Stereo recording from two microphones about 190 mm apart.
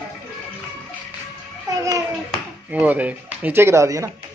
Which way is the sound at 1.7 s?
20° right (ahead or behind).